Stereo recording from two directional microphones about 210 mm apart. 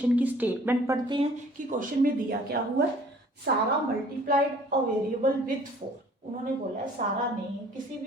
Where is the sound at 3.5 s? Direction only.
50° right (ahead or behind).